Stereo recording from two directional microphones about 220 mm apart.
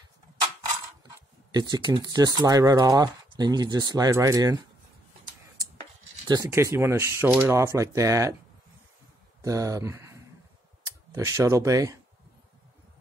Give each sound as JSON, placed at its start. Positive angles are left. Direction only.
{"t": 1.0, "sound": "speech", "side_deg": -20}
{"t": 5.8, "sound": "rub", "side_deg": -20}
{"t": 9.4, "sound": "speech", "side_deg": -15}